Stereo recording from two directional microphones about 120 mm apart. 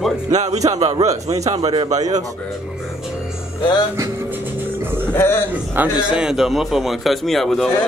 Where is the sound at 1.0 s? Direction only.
30° right (ahead or behind).